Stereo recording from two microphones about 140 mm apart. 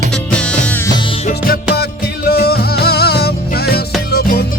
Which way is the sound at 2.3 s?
90° left.